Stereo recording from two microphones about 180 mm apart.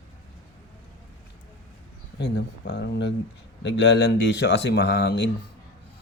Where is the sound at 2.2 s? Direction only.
75° left (ahead or behind).